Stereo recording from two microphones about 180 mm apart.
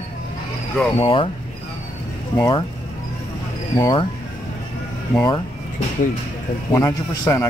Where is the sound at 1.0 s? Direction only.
30° left (ahead or behind).